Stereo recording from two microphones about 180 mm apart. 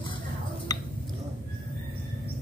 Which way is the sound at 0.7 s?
20° left (ahead or behind).